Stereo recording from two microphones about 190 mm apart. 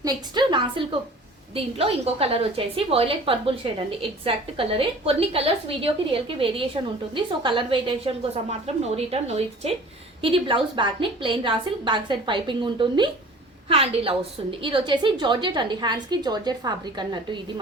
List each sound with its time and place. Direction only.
0.0 s a woman's voice: 25° right (ahead or behind)